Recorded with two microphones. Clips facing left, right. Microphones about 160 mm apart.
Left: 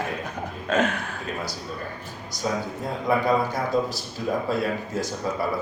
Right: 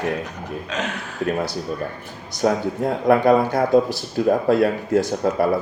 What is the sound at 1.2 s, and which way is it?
Speech, 70° right (ahead or behind).